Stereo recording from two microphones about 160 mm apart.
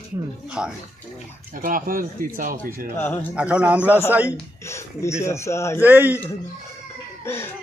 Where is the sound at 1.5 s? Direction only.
60° right (ahead or behind).